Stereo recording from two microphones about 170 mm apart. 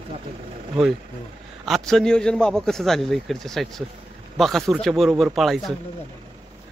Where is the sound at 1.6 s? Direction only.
Centre (ahead or behind).